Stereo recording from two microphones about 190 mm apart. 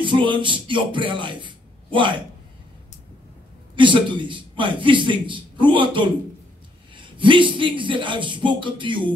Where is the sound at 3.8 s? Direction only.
25° right (ahead or behind).